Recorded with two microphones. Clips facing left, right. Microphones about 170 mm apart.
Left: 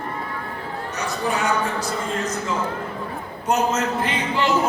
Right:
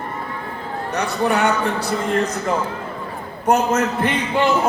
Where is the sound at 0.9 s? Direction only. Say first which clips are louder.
Right 6 dB; 65° right (ahead or behind).